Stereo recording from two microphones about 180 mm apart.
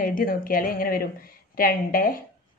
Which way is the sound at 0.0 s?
50° left (ahead or behind).